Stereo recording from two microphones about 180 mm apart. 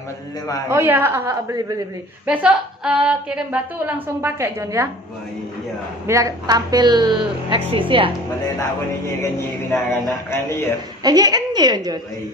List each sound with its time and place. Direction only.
0.7 s a woman's voice: 10° right (ahead or behind)
6.0 s a woman's voice: 20° right (ahead or behind)
9.2 s speech: 15° left (ahead or behind)
11.0 s a woman's voice: 20° right (ahead or behind)